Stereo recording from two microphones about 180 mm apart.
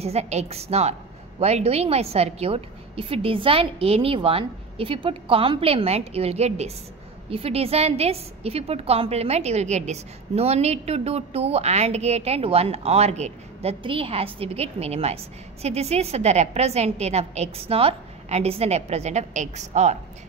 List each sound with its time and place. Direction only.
0.0 s a woman's voice: 35° right (ahead or behind)